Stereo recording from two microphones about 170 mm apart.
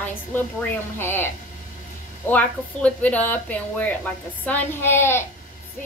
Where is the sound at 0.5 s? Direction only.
15° left (ahead or behind).